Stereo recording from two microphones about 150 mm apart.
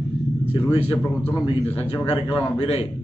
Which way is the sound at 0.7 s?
40° left (ahead or behind).